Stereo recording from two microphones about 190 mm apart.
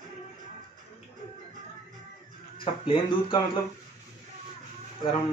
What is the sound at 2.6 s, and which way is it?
Speech, 25° left (ahead or behind).